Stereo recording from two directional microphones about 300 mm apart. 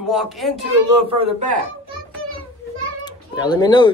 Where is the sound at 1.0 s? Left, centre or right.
Centre.